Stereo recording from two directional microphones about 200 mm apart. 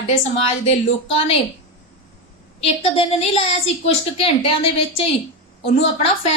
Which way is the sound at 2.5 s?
30° left (ahead or behind).